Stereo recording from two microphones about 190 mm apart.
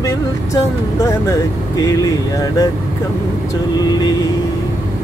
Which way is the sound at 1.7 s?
20° left (ahead or behind).